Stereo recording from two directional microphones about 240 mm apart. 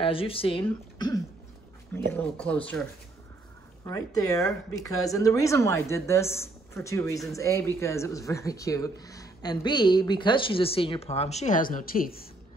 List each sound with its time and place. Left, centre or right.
0.0 s speech: left; by 2.8 s centre
3.8 s speech: centre; by 12.3 s left